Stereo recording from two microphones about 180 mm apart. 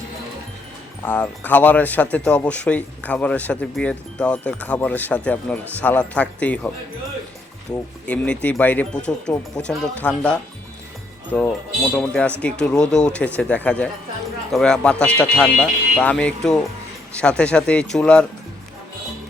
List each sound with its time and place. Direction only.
1.0 s speech: 10° left (ahead or behind)
7.7 s speech: 20° left (ahead or behind)
8.0 s speech: 5° left (ahead or behind)
11.3 s speech: 10° left (ahead or behind)